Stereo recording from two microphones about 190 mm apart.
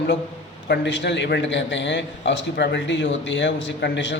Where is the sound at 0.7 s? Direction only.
65° left (ahead or behind).